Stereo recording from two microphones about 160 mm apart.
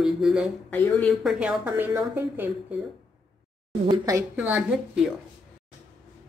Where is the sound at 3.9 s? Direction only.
20° right (ahead or behind).